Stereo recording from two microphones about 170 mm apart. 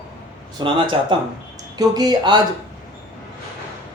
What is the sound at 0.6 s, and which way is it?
Speech, 25° right (ahead or behind).